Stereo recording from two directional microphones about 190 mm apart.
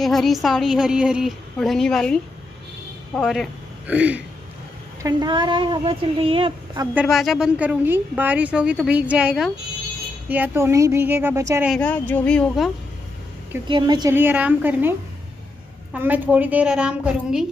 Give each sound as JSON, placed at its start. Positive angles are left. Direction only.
{"t": 0.0, "sound": "a woman's voice", "side_deg": 0}
{"t": 5.0, "sound": "a woman's voice", "side_deg": -25}
{"t": 6.9, "sound": "a woman's voice", "side_deg": -5}
{"t": 11.7, "sound": "a woman's voice", "side_deg": 5}
{"t": 13.7, "sound": "a woman's voice", "side_deg": -25}
{"t": 14.1, "sound": "a woman's voice", "side_deg": -10}